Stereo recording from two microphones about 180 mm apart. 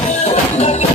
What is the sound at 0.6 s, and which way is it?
Music, 35° left (ahead or behind).